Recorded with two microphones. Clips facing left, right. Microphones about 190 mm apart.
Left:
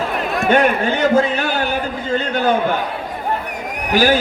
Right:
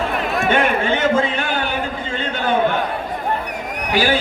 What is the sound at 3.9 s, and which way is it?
Speech, 45° left (ahead or behind).